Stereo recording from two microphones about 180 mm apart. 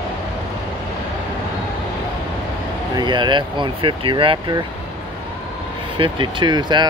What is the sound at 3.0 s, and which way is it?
Speech, 25° right (ahead or behind).